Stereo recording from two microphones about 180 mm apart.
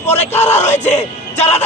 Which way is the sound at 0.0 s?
35° left (ahead or behind).